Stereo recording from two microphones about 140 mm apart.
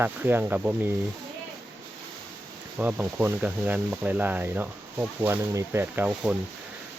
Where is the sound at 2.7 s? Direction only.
10° right (ahead or behind).